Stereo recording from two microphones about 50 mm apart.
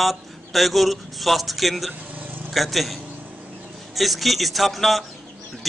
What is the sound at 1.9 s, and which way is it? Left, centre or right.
Vehicle, right.